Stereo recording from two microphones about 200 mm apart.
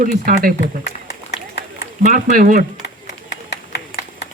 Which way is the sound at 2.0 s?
40° right (ahead or behind).